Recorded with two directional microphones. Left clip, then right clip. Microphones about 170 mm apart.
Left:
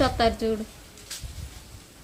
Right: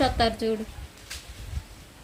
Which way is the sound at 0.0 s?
15° left (ahead or behind).